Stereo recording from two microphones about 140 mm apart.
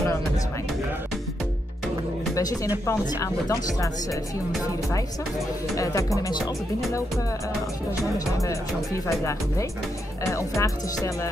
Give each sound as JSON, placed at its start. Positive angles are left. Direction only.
{"t": 2.9, "sound": "speech", "side_deg": 25}
{"t": 5.8, "sound": "speech", "side_deg": 25}
{"t": 8.0, "sound": "speech", "side_deg": 25}
{"t": 10.2, "sound": "speech", "side_deg": 20}